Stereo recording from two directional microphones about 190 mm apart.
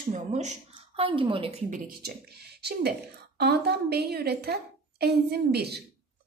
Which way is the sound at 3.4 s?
60° right (ahead or behind).